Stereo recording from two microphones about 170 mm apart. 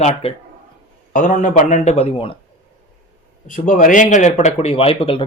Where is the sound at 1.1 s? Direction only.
50° left (ahead or behind); by 2.4 s 35° left (ahead or behind).